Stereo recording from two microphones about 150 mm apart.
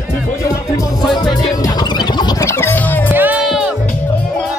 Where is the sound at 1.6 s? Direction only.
30° left (ahead or behind).